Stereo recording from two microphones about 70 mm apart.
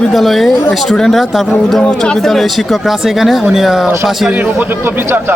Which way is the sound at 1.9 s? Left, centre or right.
Centre.